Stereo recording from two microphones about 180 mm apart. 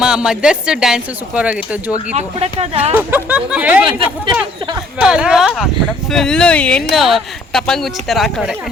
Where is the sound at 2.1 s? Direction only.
35° right (ahead or behind).